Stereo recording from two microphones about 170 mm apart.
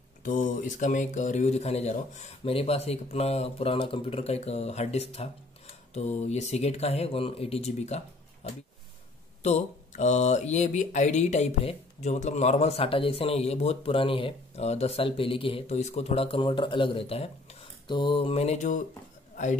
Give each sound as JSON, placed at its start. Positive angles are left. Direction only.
{"t": 0.2, "sound": "speech", "side_deg": 50}